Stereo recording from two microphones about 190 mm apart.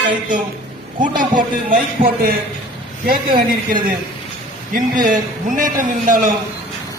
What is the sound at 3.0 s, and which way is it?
A man's voice, 50° right (ahead or behind).